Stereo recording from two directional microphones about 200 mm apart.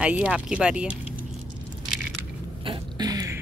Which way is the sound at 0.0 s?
5° right (ahead or behind).